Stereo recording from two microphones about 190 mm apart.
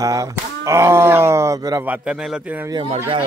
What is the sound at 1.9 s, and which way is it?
Speech, 5° right (ahead or behind).